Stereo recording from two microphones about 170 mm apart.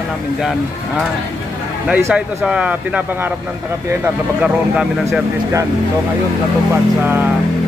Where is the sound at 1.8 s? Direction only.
5° right (ahead or behind).